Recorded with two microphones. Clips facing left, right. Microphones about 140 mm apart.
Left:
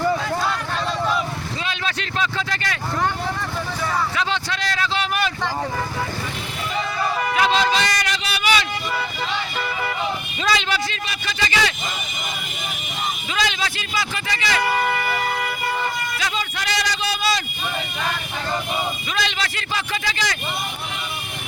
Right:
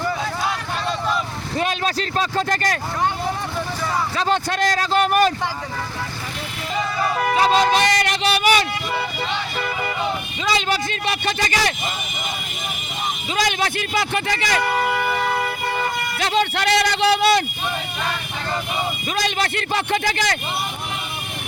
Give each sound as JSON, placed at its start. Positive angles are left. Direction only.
{"t": 1.5, "sound": "vehicle", "side_deg": -45}
{"t": 4.2, "sound": "a man's voice", "side_deg": -45}
{"t": 7.5, "sound": "speech", "side_deg": -50}
{"t": 11.0, "sound": "a man's voice", "side_deg": -60}
{"t": 13.3, "sound": "a man's voice", "side_deg": -50}
{"t": 14.7, "sound": "speech", "side_deg": 0}
{"t": 16.1, "sound": "a man's voice", "side_deg": -65}
{"t": 19.1, "sound": "a man's voice", "side_deg": -45}